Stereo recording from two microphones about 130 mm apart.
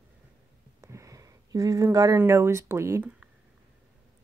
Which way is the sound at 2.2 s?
20° right (ahead or behind).